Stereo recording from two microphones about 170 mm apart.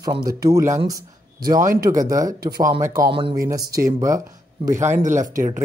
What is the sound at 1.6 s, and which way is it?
Speech, 55° right (ahead or behind).